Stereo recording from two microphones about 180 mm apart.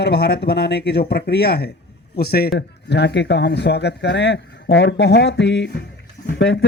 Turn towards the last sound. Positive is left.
turn(degrees=75)  # may be behind; listen again after turning